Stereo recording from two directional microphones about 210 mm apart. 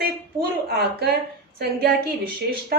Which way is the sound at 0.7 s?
50° right (ahead or behind).